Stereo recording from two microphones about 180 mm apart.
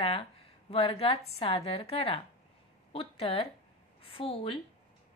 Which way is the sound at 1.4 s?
30° left (ahead or behind).